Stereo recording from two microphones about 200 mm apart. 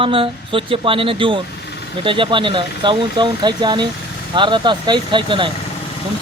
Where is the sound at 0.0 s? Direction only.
25° right (ahead or behind).